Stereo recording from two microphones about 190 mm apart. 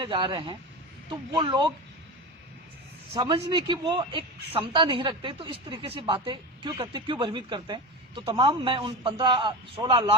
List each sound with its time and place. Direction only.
0.0 s speech: 25° right (ahead or behind)
3.2 s speech: 25° right (ahead or behind)